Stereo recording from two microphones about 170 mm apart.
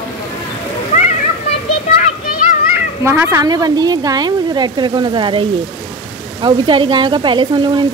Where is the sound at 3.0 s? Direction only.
15° right (ahead or behind).